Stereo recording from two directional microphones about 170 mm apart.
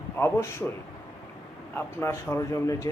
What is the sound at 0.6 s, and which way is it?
Speech, 10° left (ahead or behind).